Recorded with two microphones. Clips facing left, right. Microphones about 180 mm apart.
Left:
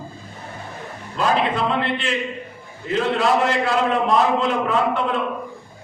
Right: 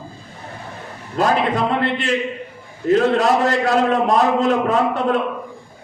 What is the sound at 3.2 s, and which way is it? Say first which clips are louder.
A man's voice: right 2 dB; 40° right (ahead or behind).